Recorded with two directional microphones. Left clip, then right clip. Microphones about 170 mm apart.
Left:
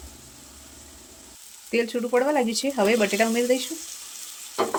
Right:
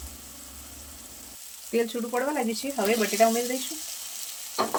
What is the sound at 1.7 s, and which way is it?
Speech, 45° left (ahead or behind).